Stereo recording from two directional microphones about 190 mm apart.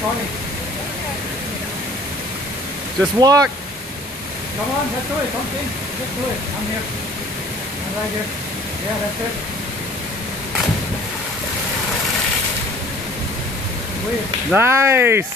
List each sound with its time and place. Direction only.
3.2 s speech: 20° right (ahead or behind)
14.5 s speech: 10° right (ahead or behind)